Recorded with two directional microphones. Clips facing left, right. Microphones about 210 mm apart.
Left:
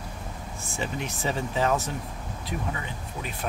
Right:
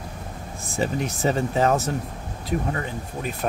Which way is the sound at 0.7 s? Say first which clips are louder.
Right 7 dB; 40° right (ahead or behind).